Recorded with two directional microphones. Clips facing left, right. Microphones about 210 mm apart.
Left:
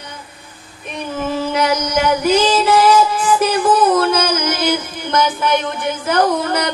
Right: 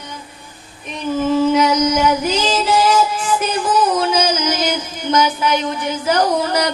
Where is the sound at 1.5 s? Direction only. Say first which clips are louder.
Right 3 dB; 60° left (ahead or behind).